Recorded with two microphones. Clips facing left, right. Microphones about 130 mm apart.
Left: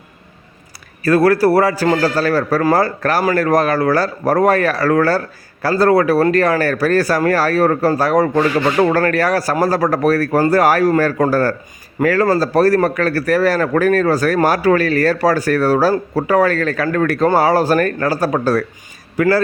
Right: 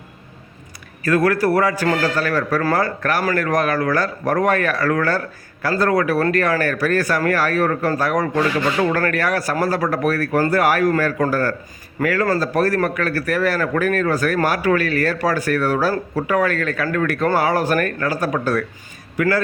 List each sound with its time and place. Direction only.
1.0 s speech: 35° left (ahead or behind)